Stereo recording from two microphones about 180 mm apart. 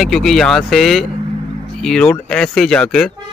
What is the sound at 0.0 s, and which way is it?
Speech, centre (ahead or behind).